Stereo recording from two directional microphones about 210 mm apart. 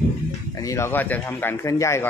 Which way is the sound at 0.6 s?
15° left (ahead or behind).